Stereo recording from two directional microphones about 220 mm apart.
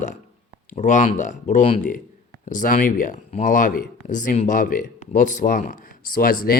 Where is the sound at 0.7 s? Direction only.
35° left (ahead or behind).